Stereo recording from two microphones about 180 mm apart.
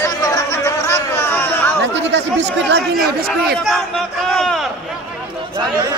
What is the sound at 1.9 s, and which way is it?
Speech, 75° right (ahead or behind).